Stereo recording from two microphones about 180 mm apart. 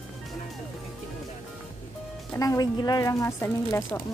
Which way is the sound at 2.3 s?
20° left (ahead or behind).